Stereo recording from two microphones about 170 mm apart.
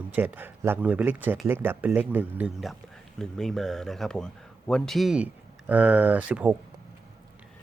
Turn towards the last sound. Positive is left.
turn(degrees=-10)  # may be behind; listen again after turning